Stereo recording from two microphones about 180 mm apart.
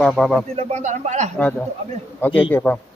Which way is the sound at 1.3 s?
5° left (ahead or behind).